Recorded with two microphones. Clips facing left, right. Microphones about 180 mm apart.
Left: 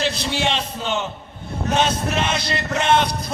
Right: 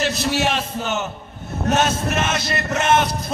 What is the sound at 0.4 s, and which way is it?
A man's voice, 5° right (ahead or behind).